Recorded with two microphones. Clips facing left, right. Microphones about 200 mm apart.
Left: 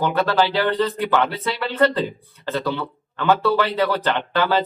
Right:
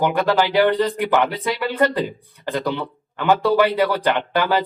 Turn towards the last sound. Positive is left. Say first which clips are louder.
# right 1 dB
turn(degrees=-15)  # may be behind; listen again after turning